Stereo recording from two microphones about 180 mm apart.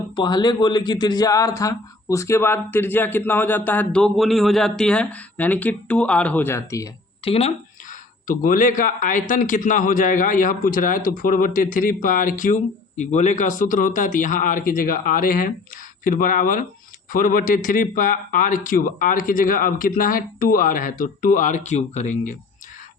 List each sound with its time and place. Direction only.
0.2 s speech: 25° left (ahead or behind)
7.3 s speech: 35° left (ahead or behind)